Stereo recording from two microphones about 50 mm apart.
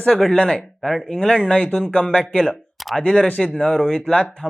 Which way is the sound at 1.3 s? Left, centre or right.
Left.